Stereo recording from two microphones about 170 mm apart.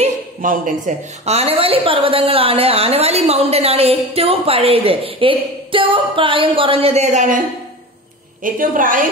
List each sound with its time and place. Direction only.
0.0 s a woman's voice: 50° right (ahead or behind)
8.5 s a woman's voice: 55° right (ahead or behind)